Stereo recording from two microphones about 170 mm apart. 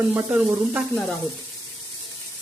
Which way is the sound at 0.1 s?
10° right (ahead or behind).